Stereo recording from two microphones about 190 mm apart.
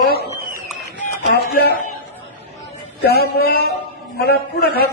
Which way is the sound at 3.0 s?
55° left (ahead or behind).